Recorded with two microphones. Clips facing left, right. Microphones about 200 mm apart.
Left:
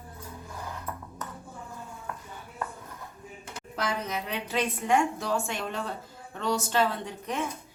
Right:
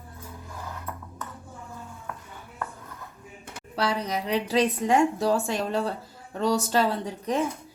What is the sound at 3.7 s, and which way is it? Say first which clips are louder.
A woman's voice: right 4 dB; 35° right (ahead or behind).